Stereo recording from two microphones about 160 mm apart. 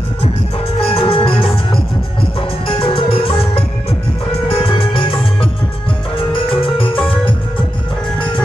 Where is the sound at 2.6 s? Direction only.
35° left (ahead or behind).